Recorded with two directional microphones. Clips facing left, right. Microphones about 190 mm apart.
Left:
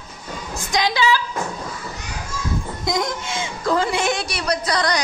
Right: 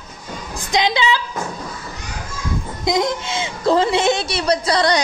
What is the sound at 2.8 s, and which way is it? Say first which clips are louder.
A woman's voice: right 5 dB; 20° right (ahead or behind).